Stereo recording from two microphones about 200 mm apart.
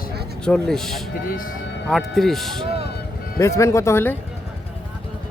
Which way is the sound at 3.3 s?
15° left (ahead or behind).